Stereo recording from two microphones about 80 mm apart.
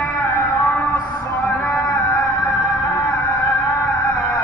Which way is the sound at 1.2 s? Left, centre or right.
Left.